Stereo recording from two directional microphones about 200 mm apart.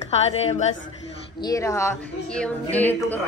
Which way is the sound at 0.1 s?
35° left (ahead or behind).